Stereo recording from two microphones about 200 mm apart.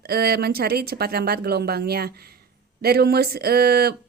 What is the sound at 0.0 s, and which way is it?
Speech, 50° right (ahead or behind).